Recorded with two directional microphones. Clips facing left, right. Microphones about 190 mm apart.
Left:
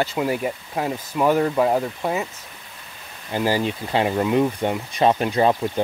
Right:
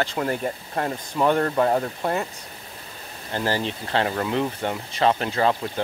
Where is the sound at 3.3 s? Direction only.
15° left (ahead or behind).